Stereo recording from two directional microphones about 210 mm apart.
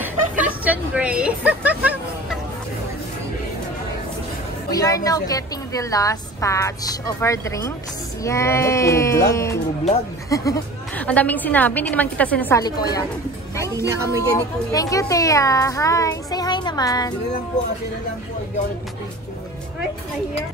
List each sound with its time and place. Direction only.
0.0 s a sound: 10° right (ahead or behind)
4.6 s speech: 15° left (ahead or behind)
14.0 s speech: 15° left (ahead or behind)